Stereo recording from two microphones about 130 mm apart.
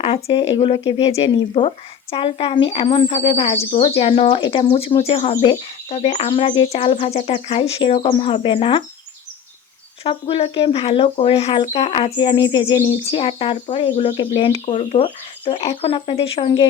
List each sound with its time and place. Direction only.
0.0 s speech: 50° left (ahead or behind)
10.0 s speech: 45° left (ahead or behind)
12.1 s speech: 40° left (ahead or behind)
13.9 s speech: 55° left (ahead or behind)
14.2 s speech: 45° left (ahead or behind); by 15.0 s 60° left (ahead or behind)
15.0 s speech: 40° left (ahead or behind)